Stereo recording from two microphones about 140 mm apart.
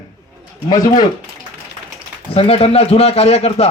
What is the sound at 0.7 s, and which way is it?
Speech, 30° left (ahead or behind).